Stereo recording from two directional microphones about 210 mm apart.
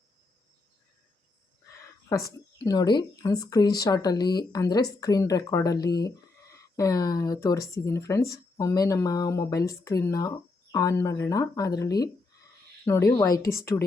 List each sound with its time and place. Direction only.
2.1 s speech: 15° left (ahead or behind)
13.4 s speech: 45° left (ahead or behind)